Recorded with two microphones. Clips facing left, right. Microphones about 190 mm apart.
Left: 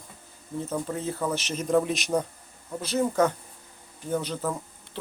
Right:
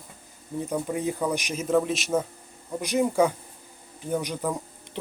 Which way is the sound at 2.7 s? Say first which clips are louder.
Right 2 dB; 15° right (ahead or behind).